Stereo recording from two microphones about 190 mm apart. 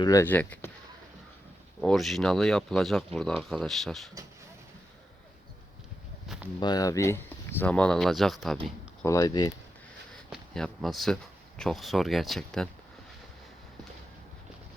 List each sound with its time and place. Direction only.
0.0 s speech: 15° left (ahead or behind)
1.8 s speech: centre (ahead or behind)
6.2 s a sound: 5° right (ahead or behind)
6.6 s speech: 20° left (ahead or behind); by 8.5 s centre (ahead or behind)
9.0 s speech: 20° left (ahead or behind)
10.2 s speech: centre (ahead or behind)